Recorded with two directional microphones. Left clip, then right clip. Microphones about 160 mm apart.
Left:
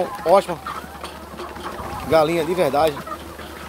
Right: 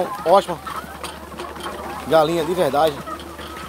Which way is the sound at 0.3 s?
Centre (ahead or behind).